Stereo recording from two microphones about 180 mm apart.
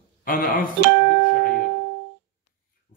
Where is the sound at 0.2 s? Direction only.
50° left (ahead or behind).